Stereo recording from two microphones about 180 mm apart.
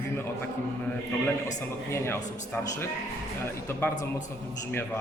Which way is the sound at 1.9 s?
15° left (ahead or behind).